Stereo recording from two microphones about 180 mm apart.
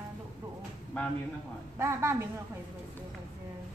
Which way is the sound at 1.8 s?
15° right (ahead or behind).